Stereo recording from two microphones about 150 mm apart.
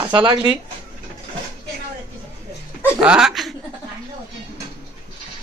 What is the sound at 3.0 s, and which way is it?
Speech, 5° right (ahead or behind).